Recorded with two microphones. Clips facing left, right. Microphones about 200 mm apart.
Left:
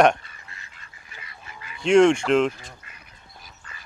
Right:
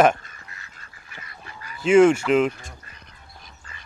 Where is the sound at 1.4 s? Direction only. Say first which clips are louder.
Right 2 dB; 40° right (ahead or behind).